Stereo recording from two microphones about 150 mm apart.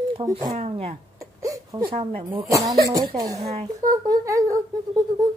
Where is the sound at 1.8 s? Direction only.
35° right (ahead or behind).